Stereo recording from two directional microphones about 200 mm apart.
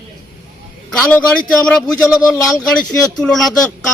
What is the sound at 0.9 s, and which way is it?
A man's voice, 5° left (ahead or behind).